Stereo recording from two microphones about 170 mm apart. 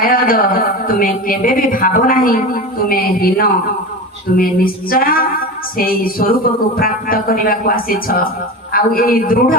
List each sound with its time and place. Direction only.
0.0 s speech: 55° left (ahead or behind)